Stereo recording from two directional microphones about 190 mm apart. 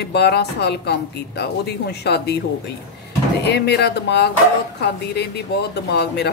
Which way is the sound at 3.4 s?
60° left (ahead or behind).